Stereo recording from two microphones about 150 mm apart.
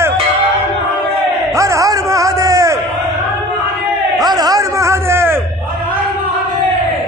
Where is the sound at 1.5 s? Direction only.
20° right (ahead or behind).